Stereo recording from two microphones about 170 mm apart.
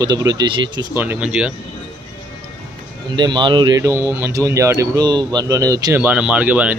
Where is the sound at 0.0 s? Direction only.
20° right (ahead or behind).